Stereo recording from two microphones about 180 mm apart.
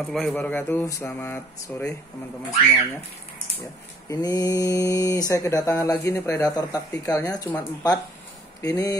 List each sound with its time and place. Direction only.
0.0 s speech: 5° left (ahead or behind)
4.1 s speech: 20° left (ahead or behind)